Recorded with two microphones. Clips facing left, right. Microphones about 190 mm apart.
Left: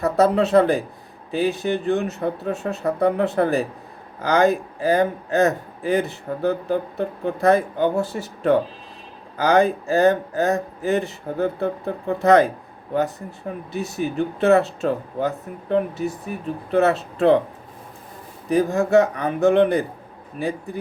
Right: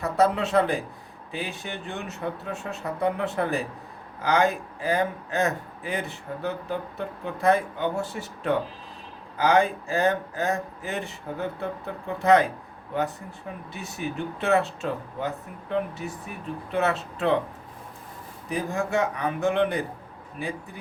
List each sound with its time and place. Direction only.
0.0 s a man's voice: 40° left (ahead or behind)
18.4 s a man's voice: 40° left (ahead or behind)